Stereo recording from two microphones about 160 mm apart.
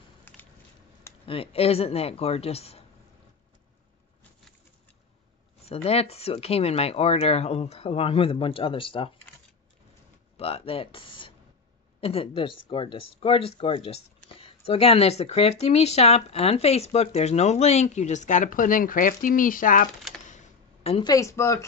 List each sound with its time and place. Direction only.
0.3 s a sound: 10° left (ahead or behind)
1.2 s speech: 35° left (ahead or behind)
5.7 s speech: 40° left (ahead or behind)
10.3 s speech: 35° left (ahead or behind); by 19.9 s 55° left (ahead or behind)
20.2 s a sound: 45° left (ahead or behind)
21.1 s speech: 20° left (ahead or behind)